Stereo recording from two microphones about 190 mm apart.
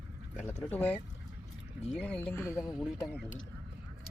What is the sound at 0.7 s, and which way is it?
Speech, 5° left (ahead or behind).